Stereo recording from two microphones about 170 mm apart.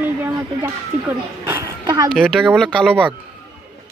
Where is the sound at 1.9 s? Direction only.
25° right (ahead or behind).